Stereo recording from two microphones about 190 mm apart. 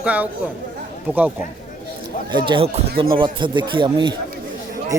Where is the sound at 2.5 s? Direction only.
25° right (ahead or behind).